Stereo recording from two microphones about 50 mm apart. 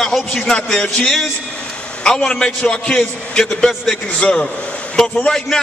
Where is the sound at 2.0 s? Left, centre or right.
Centre.